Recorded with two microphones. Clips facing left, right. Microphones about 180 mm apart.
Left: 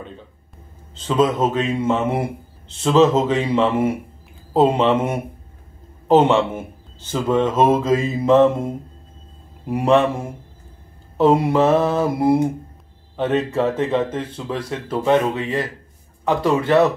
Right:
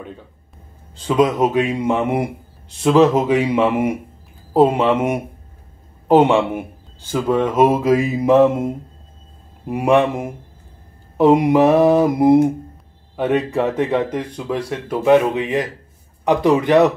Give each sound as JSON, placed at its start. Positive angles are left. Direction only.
{"t": 0.9, "sound": "speech", "side_deg": -10}